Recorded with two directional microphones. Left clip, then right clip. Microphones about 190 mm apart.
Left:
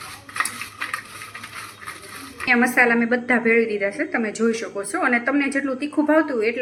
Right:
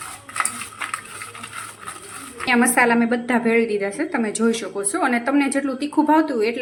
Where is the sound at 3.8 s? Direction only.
30° right (ahead or behind).